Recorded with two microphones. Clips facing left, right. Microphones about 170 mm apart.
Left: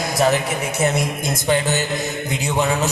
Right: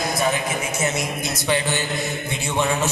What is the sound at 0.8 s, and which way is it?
Speech, 55° left (ahead or behind).